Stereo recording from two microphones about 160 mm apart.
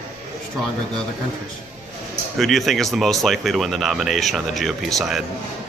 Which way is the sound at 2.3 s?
Centre (ahead or behind).